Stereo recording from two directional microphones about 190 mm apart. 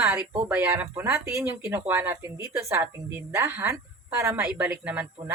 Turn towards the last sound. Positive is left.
turn(degrees=-10)  # may be behind; listen again after turning